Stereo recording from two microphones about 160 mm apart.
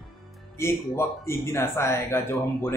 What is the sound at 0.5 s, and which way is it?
Speech, 15° left (ahead or behind).